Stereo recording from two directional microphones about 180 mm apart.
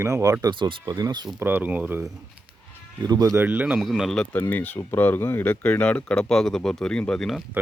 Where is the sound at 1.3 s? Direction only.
10° right (ahead or behind).